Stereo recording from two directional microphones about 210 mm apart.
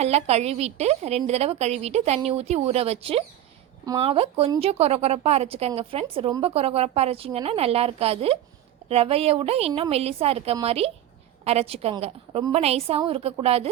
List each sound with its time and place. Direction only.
0.0 s a woman's voice: 30° right (ahead or behind)